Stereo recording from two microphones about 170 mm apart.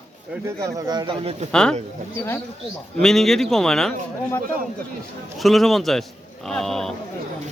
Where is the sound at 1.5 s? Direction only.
5° left (ahead or behind).